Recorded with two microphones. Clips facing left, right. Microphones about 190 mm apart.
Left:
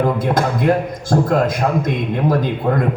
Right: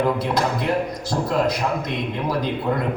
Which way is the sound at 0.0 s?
50° left (ahead or behind).